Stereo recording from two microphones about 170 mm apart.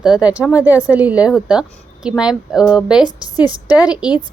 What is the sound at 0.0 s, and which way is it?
A woman's voice, 5° right (ahead or behind).